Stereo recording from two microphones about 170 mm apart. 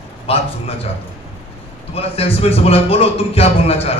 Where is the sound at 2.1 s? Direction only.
35° left (ahead or behind).